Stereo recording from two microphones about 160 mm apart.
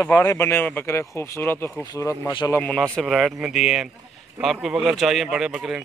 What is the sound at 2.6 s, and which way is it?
A man's voice, 5° left (ahead or behind).